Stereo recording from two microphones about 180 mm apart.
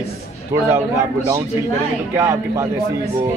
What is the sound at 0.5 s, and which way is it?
Speech, 15° right (ahead or behind).